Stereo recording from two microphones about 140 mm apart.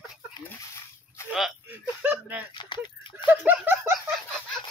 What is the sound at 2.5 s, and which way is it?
Speech, 35° left (ahead or behind).